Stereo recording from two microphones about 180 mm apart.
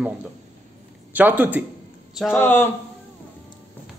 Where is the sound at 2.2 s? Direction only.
10° left (ahead or behind).